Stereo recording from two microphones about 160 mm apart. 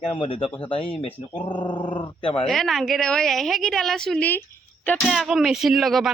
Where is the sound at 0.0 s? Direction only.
35° left (ahead or behind).